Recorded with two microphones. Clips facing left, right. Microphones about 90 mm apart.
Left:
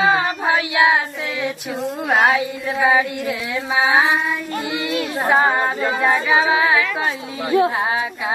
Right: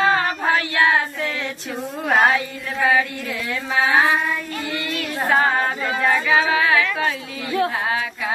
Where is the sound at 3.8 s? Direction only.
20° left (ahead or behind).